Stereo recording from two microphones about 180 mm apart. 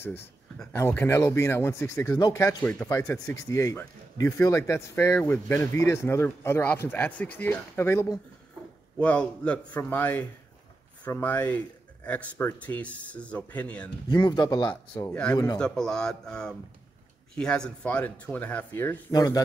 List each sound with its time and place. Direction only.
0.0 s speech: 10° left (ahead or behind)
14.1 s speech: 25° left (ahead or behind)
15.0 s speech: 5° left (ahead or behind)